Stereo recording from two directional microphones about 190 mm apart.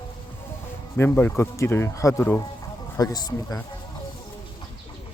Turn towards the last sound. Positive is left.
turn(degrees=20)  # may be behind; listen again after turning